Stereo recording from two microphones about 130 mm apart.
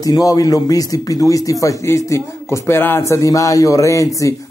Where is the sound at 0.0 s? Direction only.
30° left (ahead or behind).